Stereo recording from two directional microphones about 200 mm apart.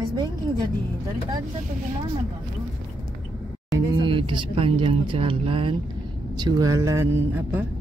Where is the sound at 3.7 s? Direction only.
25° right (ahead or behind).